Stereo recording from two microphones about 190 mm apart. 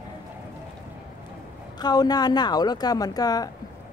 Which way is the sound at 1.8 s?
20° left (ahead or behind).